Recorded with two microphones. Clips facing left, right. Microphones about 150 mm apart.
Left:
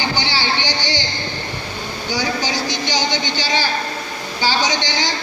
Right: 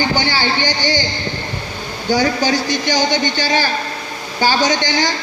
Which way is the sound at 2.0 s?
50° right (ahead or behind).